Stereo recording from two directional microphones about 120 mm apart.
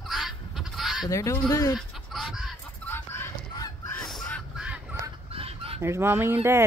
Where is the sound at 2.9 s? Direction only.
15° left (ahead or behind).